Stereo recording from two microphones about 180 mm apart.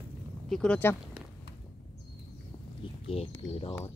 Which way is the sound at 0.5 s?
5° left (ahead or behind).